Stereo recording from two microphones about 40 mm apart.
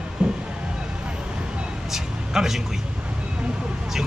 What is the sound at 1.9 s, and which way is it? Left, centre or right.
Speech, centre.